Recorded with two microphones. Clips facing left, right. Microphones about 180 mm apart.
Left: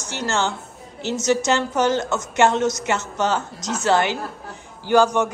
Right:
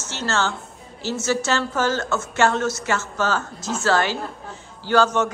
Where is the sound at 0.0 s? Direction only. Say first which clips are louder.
Left 1 dB; 15° left (ahead or behind).